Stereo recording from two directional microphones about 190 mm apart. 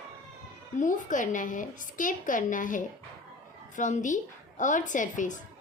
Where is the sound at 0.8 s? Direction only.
40° left (ahead or behind).